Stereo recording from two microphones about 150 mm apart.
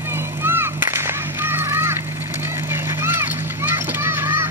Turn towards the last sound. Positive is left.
turn(degrees=-15)  # may be behind; listen again after turning